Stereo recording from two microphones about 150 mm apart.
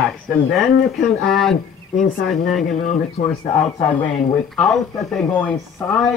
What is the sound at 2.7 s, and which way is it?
Speech, 55° left (ahead or behind).